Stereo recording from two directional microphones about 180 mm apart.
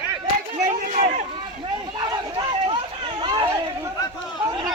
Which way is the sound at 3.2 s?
25° right (ahead or behind).